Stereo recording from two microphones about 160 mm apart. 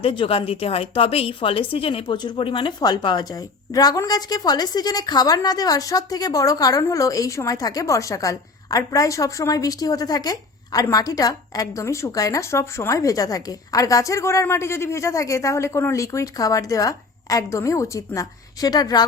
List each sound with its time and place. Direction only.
0.0 s a woman's voice: 35° left (ahead or behind)